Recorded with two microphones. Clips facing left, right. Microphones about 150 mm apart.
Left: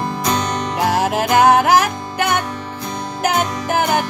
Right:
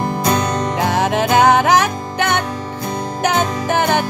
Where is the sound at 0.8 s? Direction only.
5° left (ahead or behind).